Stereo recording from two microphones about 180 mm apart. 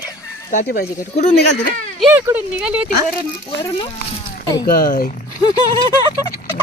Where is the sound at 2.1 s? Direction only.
10° right (ahead or behind).